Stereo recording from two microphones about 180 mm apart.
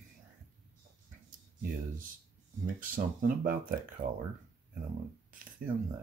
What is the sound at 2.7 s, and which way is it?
Speech, 50° right (ahead or behind).